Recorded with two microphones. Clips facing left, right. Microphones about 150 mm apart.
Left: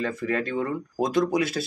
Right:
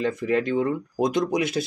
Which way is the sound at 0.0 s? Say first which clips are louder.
Right 4 dB; 20° right (ahead or behind).